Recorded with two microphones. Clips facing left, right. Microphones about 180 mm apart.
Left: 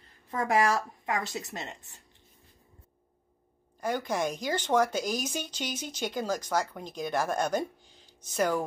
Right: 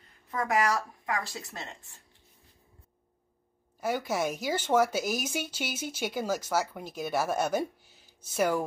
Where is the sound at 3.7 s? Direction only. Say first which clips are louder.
Even; 5° right (ahead or behind).